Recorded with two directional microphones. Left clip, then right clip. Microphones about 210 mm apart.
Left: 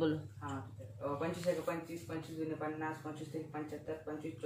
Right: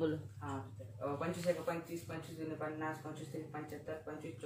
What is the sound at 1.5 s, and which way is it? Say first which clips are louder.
Speech: even; 10° right (ahead or behind).